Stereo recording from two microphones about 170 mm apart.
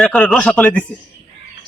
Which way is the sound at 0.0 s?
5° left (ahead or behind).